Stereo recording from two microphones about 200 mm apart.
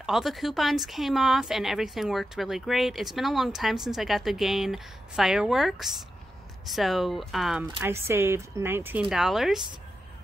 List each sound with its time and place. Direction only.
0.0 s speech: centre (ahead or behind)
7.8 s speech: 15° right (ahead or behind)